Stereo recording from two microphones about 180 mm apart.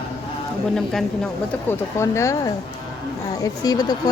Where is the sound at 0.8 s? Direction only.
Centre (ahead or behind).